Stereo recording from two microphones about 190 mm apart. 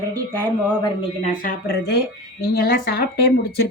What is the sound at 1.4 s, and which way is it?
Speech, 55° left (ahead or behind).